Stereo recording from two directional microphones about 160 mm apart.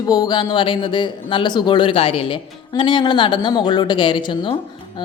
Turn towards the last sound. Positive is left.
turn(degrees=30)  # may be behind; listen again after turning